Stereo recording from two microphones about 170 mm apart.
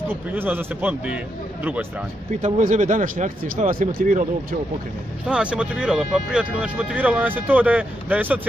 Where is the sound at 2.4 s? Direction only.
45° right (ahead or behind).